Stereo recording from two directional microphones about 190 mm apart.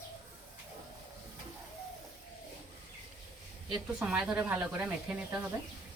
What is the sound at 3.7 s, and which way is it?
Speech, 5° right (ahead or behind).